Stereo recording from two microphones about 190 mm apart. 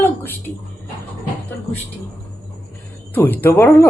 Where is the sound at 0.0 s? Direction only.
10° left (ahead or behind).